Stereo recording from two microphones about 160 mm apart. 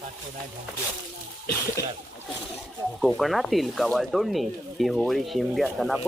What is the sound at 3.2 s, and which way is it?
Speech, centre (ahead or behind).